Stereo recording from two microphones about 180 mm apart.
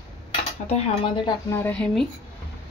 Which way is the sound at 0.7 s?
35° left (ahead or behind).